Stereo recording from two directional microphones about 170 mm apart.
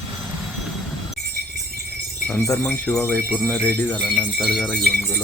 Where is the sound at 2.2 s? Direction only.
10° left (ahead or behind).